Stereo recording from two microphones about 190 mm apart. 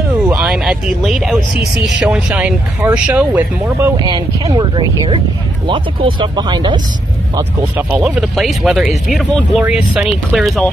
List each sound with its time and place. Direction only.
0.3 s speech: 5° right (ahead or behind)
1.5 s speech: 65° right (ahead or behind)
2.0 s speech: 5° right (ahead or behind)
3.9 s speech: 20° right (ahead or behind)
8.0 s speech: 5° right (ahead or behind)